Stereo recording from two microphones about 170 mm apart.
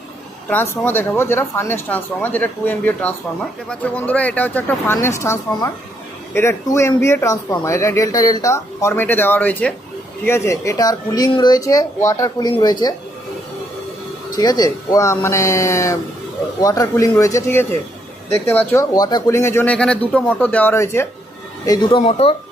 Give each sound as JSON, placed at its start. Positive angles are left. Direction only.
{"t": 0.4, "sound": "speech", "side_deg": 10}
{"t": 14.3, "sound": "speech", "side_deg": 25}
{"t": 21.7, "sound": "speech", "side_deg": 30}